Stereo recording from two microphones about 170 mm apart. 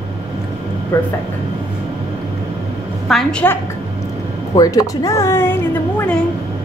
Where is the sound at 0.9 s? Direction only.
15° left (ahead or behind).